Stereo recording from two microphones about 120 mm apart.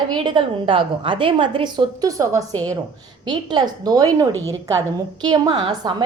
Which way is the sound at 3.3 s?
40° right (ahead or behind).